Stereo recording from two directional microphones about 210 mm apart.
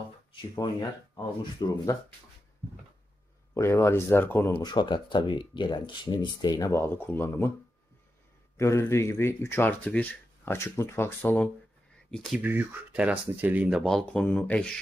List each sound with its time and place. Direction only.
0.3 s speech: 20° left (ahead or behind)
3.5 s speech: 15° left (ahead or behind)
8.5 s speech: 15° left (ahead or behind)